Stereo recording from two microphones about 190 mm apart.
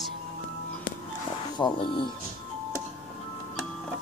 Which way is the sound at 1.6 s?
25° left (ahead or behind).